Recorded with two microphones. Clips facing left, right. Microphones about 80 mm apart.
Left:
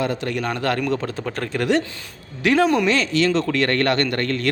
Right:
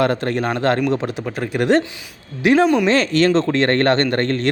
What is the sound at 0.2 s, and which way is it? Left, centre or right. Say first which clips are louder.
Speech: right 4 dB; right.